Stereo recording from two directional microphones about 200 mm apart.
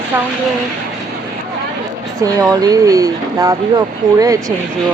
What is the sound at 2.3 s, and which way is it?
Speech, 15° right (ahead or behind).